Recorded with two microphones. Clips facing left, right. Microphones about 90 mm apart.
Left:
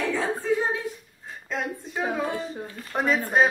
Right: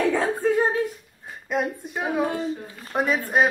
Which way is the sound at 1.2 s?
15° right (ahead or behind).